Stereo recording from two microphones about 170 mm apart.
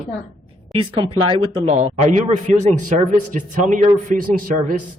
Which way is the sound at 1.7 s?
45° right (ahead or behind).